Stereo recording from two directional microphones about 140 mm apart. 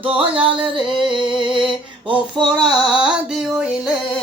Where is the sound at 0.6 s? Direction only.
35° right (ahead or behind).